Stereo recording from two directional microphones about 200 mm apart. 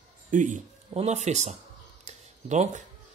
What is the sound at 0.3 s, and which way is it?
Speech, 40° right (ahead or behind).